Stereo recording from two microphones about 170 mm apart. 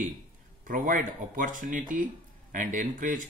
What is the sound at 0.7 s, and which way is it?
Speech, 50° right (ahead or behind).